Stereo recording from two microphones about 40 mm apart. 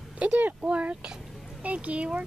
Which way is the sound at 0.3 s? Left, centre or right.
Right.